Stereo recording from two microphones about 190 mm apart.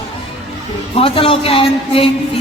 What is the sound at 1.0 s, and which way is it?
A man's voice, 30° left (ahead or behind).